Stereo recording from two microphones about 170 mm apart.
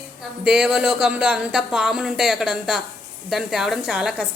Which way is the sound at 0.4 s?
5° right (ahead or behind).